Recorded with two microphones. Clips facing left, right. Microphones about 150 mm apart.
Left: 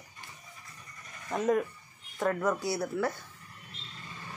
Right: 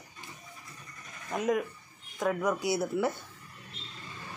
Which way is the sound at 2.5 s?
20° right (ahead or behind).